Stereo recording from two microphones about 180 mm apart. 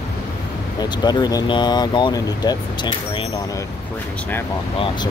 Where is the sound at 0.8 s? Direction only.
25° left (ahead or behind).